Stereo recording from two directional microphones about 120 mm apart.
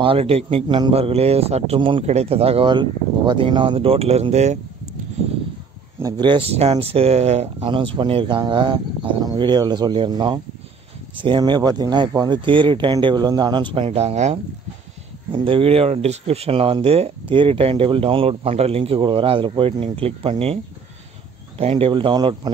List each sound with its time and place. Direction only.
0.0 s speech: 50° right (ahead or behind)
0.9 s speech: 60° right (ahead or behind)
2.0 s speech: 60° right (ahead or behind)
6.1 s speech: 45° right (ahead or behind); by 7.4 s 60° right (ahead or behind)
7.6 s speech: 45° right (ahead or behind)
13.7 s speech: 55° right (ahead or behind)
15.3 s speech: 50° right (ahead or behind)
21.5 s speech: 55° right (ahead or behind); by 22.5 s 35° right (ahead or behind)